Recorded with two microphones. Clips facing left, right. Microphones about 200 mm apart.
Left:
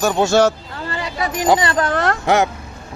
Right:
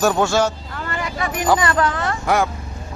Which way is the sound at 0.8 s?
30° left (ahead or behind).